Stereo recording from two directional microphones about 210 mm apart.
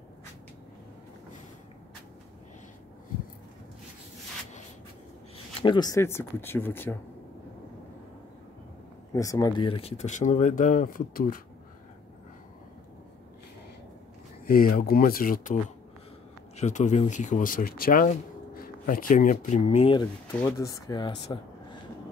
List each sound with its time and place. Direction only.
5.6 s speech: 20° left (ahead or behind)
9.1 s speech: 15° left (ahead or behind); by 11.4 s 45° left (ahead or behind)
14.4 s speech: 45° left (ahead or behind); by 20.1 s 25° left (ahead or behind)
20.3 s speech: 15° left (ahead or behind)